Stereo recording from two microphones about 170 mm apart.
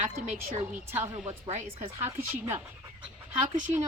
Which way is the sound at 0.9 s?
15° right (ahead or behind).